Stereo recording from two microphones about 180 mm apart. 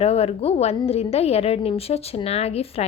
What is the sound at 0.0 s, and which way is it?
A woman's voice, 35° left (ahead or behind).